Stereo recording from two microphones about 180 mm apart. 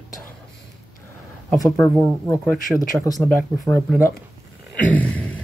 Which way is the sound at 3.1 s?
20° left (ahead or behind).